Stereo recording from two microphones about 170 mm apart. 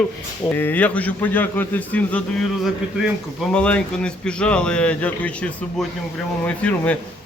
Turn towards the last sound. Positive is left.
turn(degrees=10)  # may be behind; listen again after turning